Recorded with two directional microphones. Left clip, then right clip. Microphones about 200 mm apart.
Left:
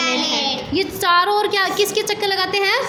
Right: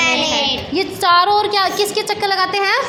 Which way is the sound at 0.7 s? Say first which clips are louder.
Right 2 dB; 5° left (ahead or behind).